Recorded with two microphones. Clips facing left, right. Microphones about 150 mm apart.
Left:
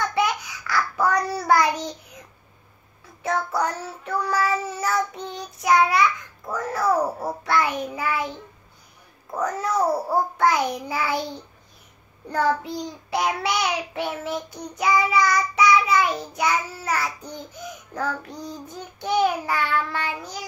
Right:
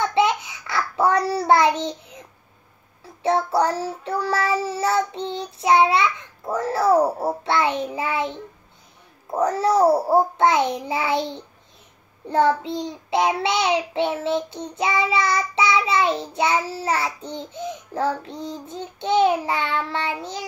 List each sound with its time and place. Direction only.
0.0 s child singing: 25° right (ahead or behind)